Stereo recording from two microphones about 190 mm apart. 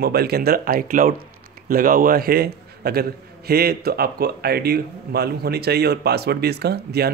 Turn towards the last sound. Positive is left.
turn(degrees=-60)  # may be behind; listen again after turning